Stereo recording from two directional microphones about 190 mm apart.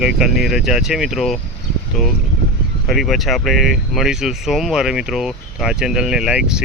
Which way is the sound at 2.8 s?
Centre (ahead or behind).